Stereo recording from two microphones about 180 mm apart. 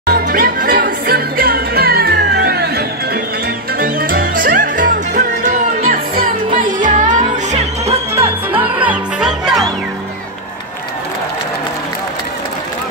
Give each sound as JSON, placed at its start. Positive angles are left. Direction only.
{"t": 0.0, "sound": "music", "side_deg": -55}
{"t": 3.7, "sound": "music", "side_deg": -50}
{"t": 8.5, "sound": "music", "side_deg": -10}